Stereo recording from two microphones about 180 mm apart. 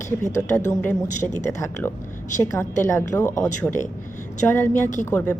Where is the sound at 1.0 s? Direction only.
40° left (ahead or behind).